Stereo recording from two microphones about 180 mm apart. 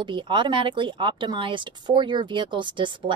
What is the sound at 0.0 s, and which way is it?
Speech, 25° right (ahead or behind).